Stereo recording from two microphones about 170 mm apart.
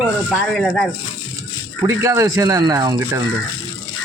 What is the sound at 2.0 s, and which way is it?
Speech, 15° right (ahead or behind).